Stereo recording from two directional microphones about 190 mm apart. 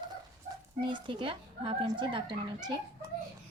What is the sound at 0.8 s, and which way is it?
Speech, 25° right (ahead or behind).